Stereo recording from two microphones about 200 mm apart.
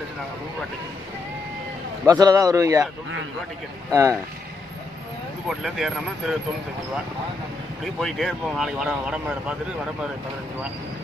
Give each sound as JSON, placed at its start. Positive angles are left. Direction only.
{"t": 2.0, "sound": "speech", "side_deg": -20}
{"t": 3.9, "sound": "speech", "side_deg": -15}
{"t": 5.5, "sound": "speech", "side_deg": 0}
{"t": 7.8, "sound": "speech", "side_deg": 0}